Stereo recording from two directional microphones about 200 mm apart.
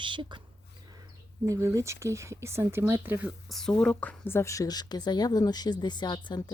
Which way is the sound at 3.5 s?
Centre (ahead or behind).